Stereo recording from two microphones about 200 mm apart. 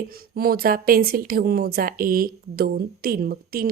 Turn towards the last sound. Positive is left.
turn(degrees=-50)  # may be behind; listen again after turning